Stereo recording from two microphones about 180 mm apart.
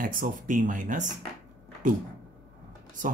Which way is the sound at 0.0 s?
50° right (ahead or behind).